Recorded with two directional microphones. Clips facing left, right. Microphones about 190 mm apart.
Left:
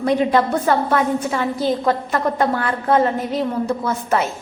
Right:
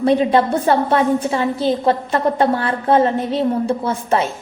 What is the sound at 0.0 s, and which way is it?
A woman's voice, 25° right (ahead or behind).